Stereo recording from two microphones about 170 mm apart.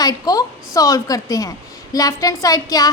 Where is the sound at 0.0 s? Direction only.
20° left (ahead or behind).